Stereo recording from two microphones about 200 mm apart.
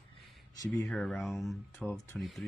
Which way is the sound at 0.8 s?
Centre (ahead or behind).